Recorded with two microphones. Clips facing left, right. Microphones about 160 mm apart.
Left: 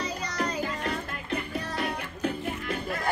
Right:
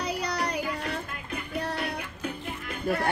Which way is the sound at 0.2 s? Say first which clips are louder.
Right 1 dB; 65° right (ahead or behind).